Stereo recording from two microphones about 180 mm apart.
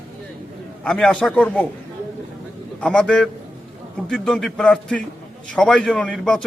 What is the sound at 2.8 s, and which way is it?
A man's voice, 5° left (ahead or behind).